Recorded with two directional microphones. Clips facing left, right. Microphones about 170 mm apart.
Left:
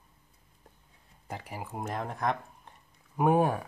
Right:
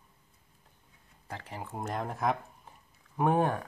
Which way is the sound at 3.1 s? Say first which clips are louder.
Left 2 dB; 10° left (ahead or behind).